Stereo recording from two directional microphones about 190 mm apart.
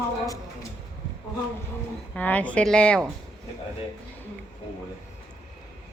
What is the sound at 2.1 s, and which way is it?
Speech, 5° left (ahead or behind).